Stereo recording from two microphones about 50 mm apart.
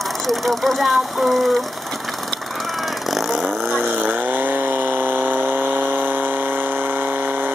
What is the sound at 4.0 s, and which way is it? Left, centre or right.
Chainsaw, right.